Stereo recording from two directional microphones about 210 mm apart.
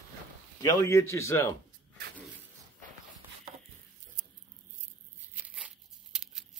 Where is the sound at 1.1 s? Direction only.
15° left (ahead or behind).